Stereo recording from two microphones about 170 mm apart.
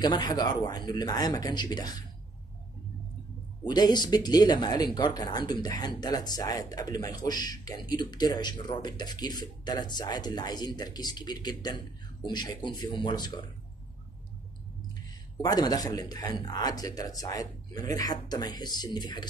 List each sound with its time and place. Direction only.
0.0 s speech: 25° left (ahead or behind)
3.6 s speech: 25° left (ahead or behind)
15.4 s speech: 20° left (ahead or behind)